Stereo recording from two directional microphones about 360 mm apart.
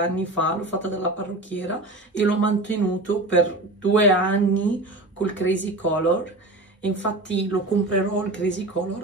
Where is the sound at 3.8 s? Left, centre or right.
Centre.